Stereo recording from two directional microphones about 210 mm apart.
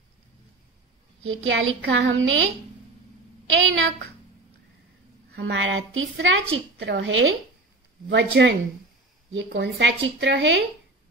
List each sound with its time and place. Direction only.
1.2 s a woman's voice: 70° right (ahead or behind)
5.3 s a woman's voice: 60° right (ahead or behind)